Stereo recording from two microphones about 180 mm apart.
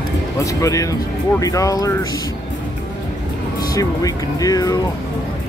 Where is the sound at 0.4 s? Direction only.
20° left (ahead or behind).